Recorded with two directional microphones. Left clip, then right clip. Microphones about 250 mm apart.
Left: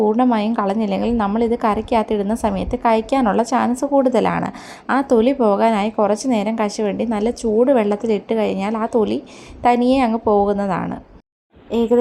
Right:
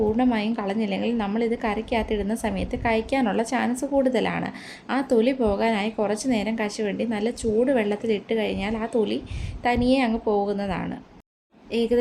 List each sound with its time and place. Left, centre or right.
0.2 s a woman's voice: centre